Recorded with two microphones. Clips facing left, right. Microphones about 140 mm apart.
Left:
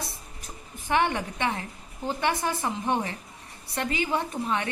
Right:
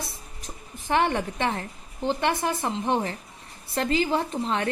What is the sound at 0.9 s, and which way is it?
A woman's voice, 35° right (ahead or behind).